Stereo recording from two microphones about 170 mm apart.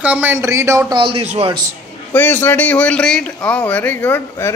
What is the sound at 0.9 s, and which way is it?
Speech, 30° right (ahead or behind).